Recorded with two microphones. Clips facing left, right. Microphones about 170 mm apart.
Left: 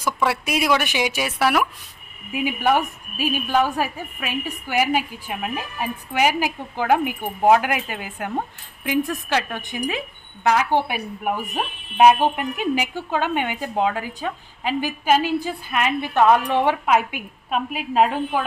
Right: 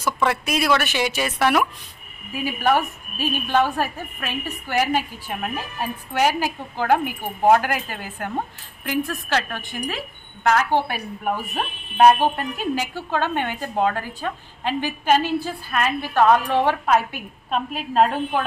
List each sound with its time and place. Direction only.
0.0 s a woman's voice: 10° left (ahead or behind)